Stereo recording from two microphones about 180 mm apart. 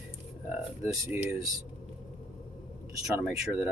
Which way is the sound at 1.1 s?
10° right (ahead or behind).